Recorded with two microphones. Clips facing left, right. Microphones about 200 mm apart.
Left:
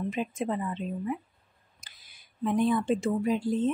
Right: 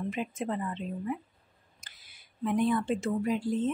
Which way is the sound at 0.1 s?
20° left (ahead or behind).